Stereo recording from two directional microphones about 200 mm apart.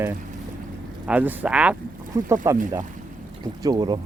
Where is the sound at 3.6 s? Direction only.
20° right (ahead or behind).